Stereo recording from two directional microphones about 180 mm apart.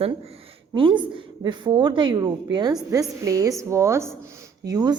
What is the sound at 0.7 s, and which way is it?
A woman's voice, 25° right (ahead or behind).